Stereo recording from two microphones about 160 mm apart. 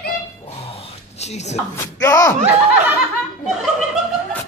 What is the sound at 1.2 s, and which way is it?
Speech, 45° left (ahead or behind).